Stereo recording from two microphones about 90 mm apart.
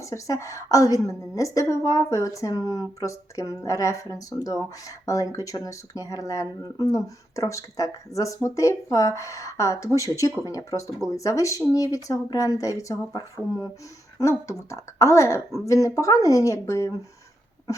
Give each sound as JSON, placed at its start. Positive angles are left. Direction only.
{"t": 0.0, "sound": "a woman's voice", "side_deg": 35}
{"t": 14.2, "sound": "a woman's voice", "side_deg": 35}